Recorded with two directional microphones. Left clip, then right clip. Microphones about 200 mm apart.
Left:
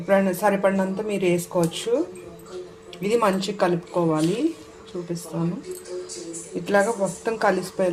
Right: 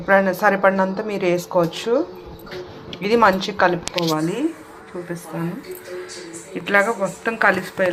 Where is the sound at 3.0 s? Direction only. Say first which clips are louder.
Right 5 dB; centre (ahead or behind).